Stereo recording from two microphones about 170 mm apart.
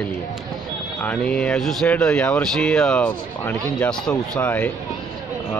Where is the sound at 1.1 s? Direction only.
5° left (ahead or behind).